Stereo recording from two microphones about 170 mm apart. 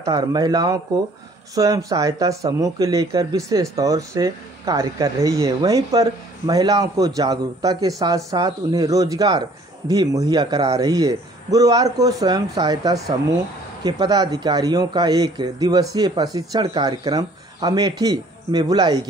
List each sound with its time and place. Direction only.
0.0 s speech: 25° right (ahead or behind)